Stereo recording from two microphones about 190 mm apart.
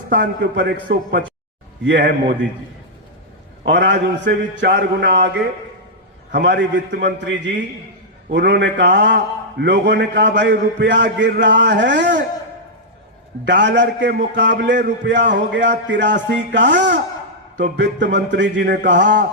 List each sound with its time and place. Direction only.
0.2 s a man's voice: 60° right (ahead or behind)
1.8 s a man's voice: 65° right (ahead or behind)
3.7 s a man's voice: 65° right (ahead or behind)
13.4 s a man's voice: 65° right (ahead or behind)